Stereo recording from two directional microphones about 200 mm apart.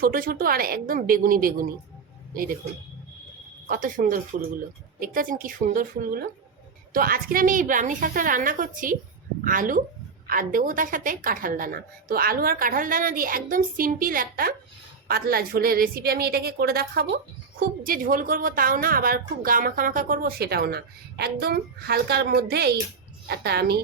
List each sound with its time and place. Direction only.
0.0 s a woman's voice: 45° right (ahead or behind)
3.7 s a woman's voice: 40° right (ahead or behind)